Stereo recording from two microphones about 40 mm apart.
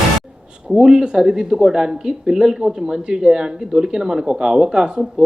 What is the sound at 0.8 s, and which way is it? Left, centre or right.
Speech, centre.